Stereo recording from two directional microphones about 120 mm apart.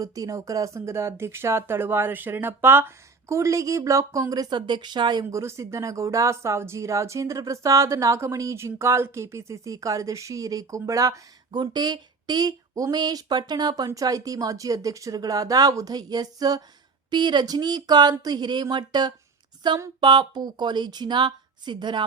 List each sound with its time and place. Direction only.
0.0 s speech: 30° right (ahead or behind)
5.3 s speech: 25° right (ahead or behind); by 22.0 s 40° right (ahead or behind)